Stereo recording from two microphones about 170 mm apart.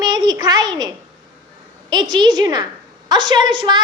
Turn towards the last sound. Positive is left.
turn(degrees=-25)  # may be behind; listen again after turning